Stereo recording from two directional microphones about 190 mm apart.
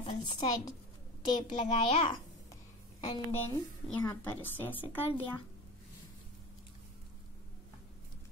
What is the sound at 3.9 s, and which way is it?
A woman's voice, 10° left (ahead or behind).